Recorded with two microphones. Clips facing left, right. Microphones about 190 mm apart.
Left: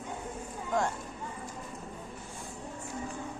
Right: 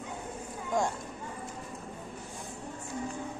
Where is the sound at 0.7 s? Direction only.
10° right (ahead or behind).